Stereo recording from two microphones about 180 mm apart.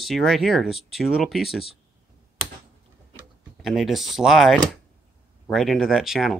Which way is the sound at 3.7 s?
Centre (ahead or behind).